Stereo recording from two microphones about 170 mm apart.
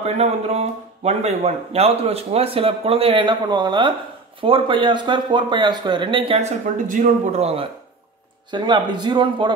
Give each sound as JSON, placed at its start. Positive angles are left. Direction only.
{"t": 0.0, "sound": "a man's voice", "side_deg": -40}
{"t": 8.5, "sound": "speech", "side_deg": -25}